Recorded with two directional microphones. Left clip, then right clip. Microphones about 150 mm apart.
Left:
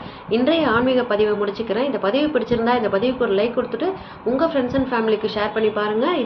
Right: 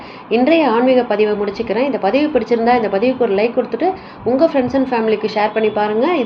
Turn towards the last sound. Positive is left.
turn(degrees=-15)  # may be behind; listen again after turning